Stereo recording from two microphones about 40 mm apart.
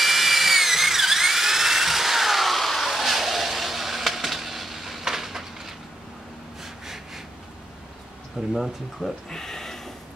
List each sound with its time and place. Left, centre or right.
0.0 s drill: centre
8.4 s speech: centre
9.0 s speech: centre